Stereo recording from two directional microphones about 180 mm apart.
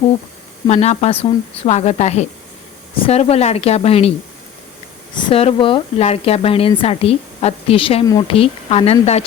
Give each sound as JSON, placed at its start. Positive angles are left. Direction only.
{"t": 0.7, "sound": "speech", "side_deg": 35}
{"t": 5.1, "sound": "speech", "side_deg": 30}